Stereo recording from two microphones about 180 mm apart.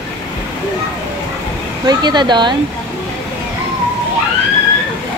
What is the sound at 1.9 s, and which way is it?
Speech, 25° right (ahead or behind).